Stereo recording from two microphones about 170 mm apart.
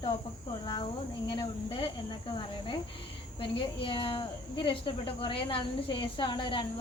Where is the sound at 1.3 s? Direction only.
30° left (ahead or behind).